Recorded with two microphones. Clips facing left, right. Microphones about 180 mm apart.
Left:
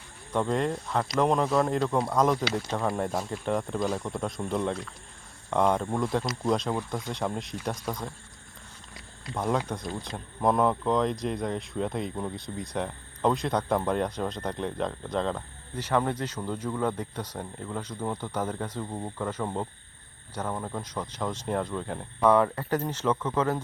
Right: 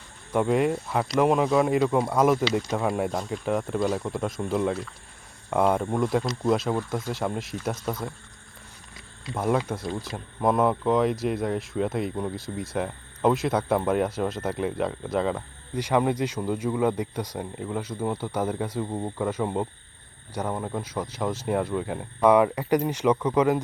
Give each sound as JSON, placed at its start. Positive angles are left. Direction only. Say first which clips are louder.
{"t": 0.3, "sound": "speech", "louder": "right 4 dB", "side_deg": -10}
{"t": 3.1, "sound": "speech", "louder": "right 2 dB", "side_deg": 5}
{"t": 9.3, "sound": "speech", "louder": "right 3 dB", "side_deg": -5}